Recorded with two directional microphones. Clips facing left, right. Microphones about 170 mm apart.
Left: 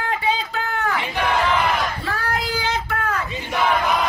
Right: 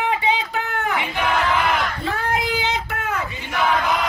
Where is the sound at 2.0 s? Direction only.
20° right (ahead or behind).